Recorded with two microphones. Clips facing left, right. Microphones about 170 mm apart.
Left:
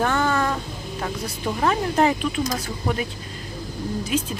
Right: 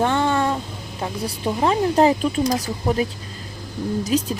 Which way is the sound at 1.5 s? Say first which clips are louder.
Right 3 dB; 25° right (ahead or behind).